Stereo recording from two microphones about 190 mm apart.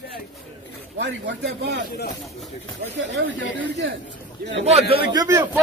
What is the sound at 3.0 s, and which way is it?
Speech, 75° right (ahead or behind).